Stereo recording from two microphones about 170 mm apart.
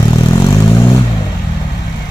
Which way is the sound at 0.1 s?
20° left (ahead or behind).